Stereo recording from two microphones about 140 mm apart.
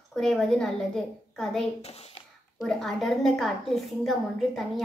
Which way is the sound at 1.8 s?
45° left (ahead or behind).